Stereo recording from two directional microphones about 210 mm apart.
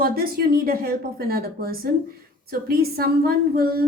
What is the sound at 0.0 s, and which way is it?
A woman's voice, 45° right (ahead or behind).